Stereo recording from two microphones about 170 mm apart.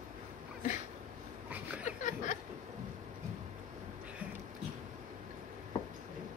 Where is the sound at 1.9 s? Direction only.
45° left (ahead or behind).